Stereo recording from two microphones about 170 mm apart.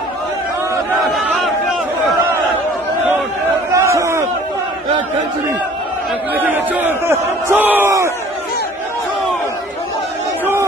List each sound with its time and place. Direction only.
1.0 s a sound: centre (ahead or behind)
3.7 s crowd: 15° right (ahead or behind)
6.3 s crowd: 10° right (ahead or behind)